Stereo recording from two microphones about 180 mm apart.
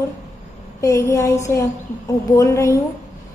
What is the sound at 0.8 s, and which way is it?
A woman's voice, 15° left (ahead or behind).